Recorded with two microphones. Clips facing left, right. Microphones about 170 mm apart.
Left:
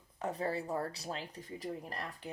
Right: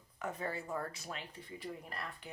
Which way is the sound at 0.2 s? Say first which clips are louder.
Left 4 dB; 35° left (ahead or behind).